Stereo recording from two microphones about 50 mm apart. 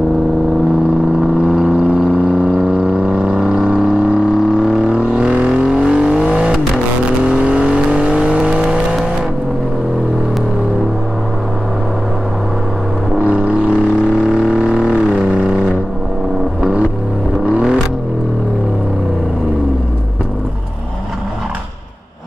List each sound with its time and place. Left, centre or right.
1.4 s vehicle: centre
13.2 s vehicle: right
14.0 s music: centre
15.3 s music: right
17.5 s vehicle: centre